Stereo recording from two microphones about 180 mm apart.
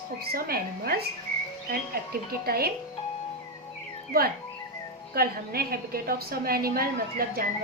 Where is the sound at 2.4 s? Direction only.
60° right (ahead or behind).